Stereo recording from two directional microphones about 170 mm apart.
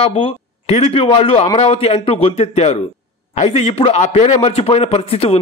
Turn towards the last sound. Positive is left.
turn(degrees=35)  # may be behind; listen again after turning